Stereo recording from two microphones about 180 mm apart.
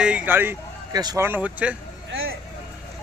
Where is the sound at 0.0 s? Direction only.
5° right (ahead or behind).